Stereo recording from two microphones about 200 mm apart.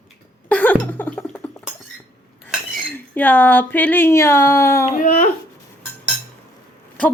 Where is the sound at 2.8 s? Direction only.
10° left (ahead or behind).